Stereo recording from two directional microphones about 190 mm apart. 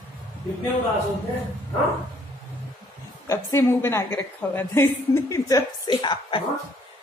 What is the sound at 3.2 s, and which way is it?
A woman's voice, 15° left (ahead or behind).